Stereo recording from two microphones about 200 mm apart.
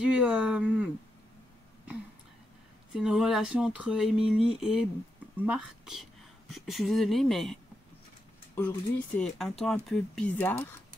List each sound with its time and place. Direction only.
0.2 s speech: 5° right (ahead or behind)
2.9 s speech: 5° right (ahead or behind)
8.5 s speech: 5° left (ahead or behind)